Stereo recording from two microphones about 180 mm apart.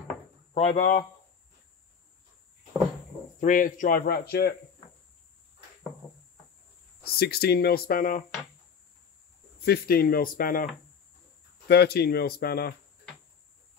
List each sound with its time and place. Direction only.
0.6 s speech: 40° left (ahead or behind)
3.3 s speech: 45° left (ahead or behind)
7.2 s speech: 60° left (ahead or behind)
9.7 s speech: 60° left (ahead or behind)
11.6 s speech: 65° left (ahead or behind)